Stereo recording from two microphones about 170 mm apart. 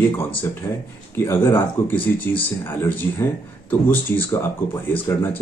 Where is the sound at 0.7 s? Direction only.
20° left (ahead or behind).